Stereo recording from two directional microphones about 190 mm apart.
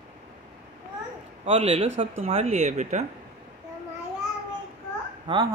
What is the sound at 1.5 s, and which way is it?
Speech, 30° right (ahead or behind).